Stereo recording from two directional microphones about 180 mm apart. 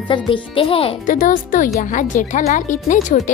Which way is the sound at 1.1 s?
45° left (ahead or behind).